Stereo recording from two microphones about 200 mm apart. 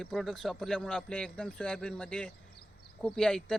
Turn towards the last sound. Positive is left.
turn(degrees=5)  # may be behind; listen again after turning